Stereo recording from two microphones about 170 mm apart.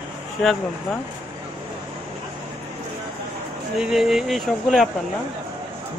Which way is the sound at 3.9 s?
Centre (ahead or behind).